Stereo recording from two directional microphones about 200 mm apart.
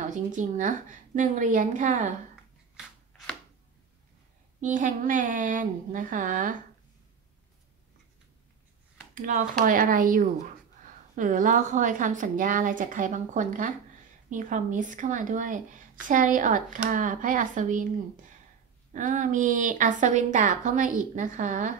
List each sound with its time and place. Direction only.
0.0 s speech: 40° right (ahead or behind)
4.6 s speech: 40° right (ahead or behind)
9.1 s speech: 40° right (ahead or behind)